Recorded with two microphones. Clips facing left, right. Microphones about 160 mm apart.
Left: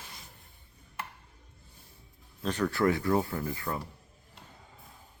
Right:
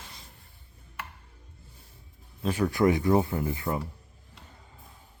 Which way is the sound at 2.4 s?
10° right (ahead or behind).